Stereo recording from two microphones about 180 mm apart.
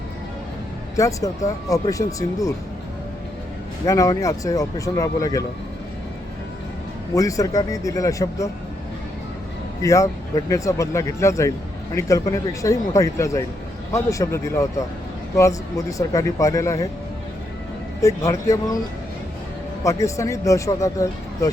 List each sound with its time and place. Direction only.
0.9 s speech: 15° left (ahead or behind)
3.8 s speech: 20° left (ahead or behind)
7.1 s speech: 20° left (ahead or behind)
9.8 s speech: 15° left (ahead or behind)
18.0 s speech: 15° left (ahead or behind)
19.8 s speech: 15° left (ahead or behind)